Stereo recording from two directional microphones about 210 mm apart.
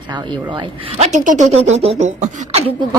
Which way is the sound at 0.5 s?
25° right (ahead or behind).